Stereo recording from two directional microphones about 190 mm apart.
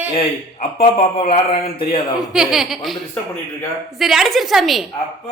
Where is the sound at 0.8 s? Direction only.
35° left (ahead or behind).